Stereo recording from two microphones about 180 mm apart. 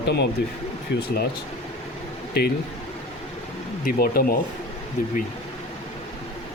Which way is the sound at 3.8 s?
55° left (ahead or behind).